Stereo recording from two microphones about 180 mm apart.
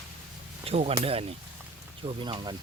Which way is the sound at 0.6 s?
35° right (ahead or behind).